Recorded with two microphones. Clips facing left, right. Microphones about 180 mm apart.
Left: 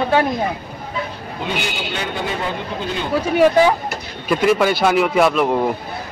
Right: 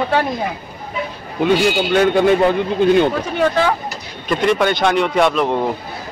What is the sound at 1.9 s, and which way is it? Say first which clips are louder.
Speech: right 13 dB; 55° right (ahead or behind).